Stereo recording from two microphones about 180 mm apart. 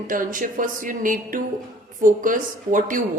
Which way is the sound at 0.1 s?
50° right (ahead or behind).